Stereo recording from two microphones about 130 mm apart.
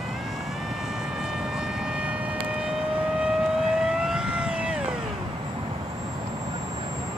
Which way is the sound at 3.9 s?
5° right (ahead or behind).